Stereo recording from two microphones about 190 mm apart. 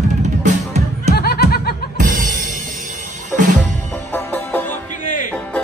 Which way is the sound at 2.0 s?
45° right (ahead or behind).